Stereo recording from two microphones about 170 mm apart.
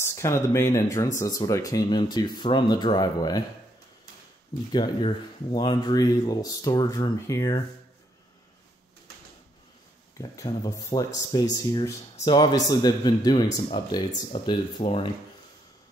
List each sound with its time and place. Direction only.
0.0 s speech: 15° left (ahead or behind)
4.7 s speech: 30° left (ahead or behind)
10.1 s speech: 20° left (ahead or behind)